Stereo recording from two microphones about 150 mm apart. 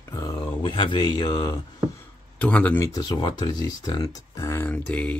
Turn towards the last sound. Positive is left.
turn(degrees=10)  # may be behind; listen again after turning